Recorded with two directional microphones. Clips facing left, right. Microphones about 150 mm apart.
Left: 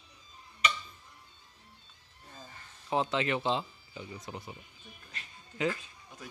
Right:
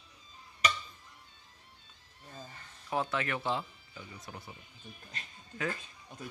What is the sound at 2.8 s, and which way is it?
Speech, 20° left (ahead or behind).